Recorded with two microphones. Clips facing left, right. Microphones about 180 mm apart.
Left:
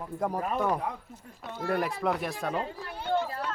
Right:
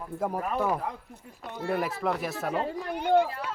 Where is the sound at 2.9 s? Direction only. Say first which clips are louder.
Right 6 dB; 15° right (ahead or behind).